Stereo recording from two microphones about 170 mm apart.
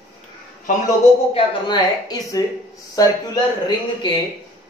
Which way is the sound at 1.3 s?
25° left (ahead or behind).